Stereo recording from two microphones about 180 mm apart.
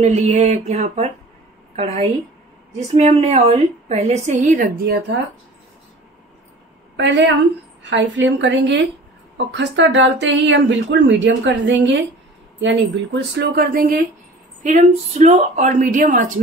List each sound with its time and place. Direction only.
0.0 s a woman's voice: 35° right (ahead or behind)
7.0 s a woman's voice: 80° right
12.6 s speech: 80° right; by 13.9 s 55° right (ahead or behind)
14.6 s a woman's voice: 40° right (ahead or behind)